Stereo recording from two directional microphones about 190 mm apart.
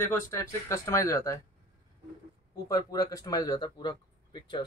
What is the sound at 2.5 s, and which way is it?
Speech, 20° left (ahead or behind).